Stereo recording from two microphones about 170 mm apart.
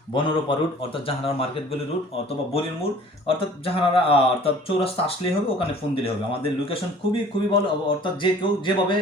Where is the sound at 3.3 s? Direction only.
35° left (ahead or behind).